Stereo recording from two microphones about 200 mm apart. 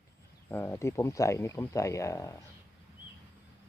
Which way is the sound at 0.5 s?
10° left (ahead or behind).